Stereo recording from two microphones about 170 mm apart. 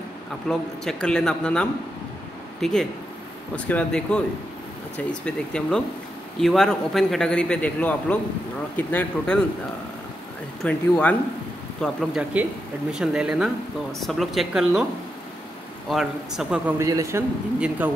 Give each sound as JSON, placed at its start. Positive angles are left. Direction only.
{"t": 0.5, "sound": "a man's voice", "side_deg": 5}
{"t": 10.6, "sound": "speech", "side_deg": 10}
{"t": 11.8, "sound": "a man's voice", "side_deg": -5}
{"t": 15.9, "sound": "a man's voice", "side_deg": 0}
{"t": 16.7, "sound": "a man's voice", "side_deg": -20}